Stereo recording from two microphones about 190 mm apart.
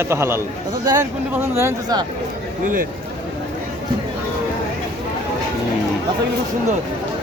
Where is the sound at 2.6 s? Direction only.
45° right (ahead or behind).